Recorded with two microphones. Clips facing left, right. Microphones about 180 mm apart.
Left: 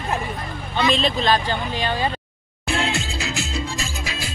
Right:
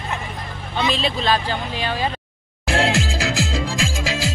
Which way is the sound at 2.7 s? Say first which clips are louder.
Right 4 dB; 85° right.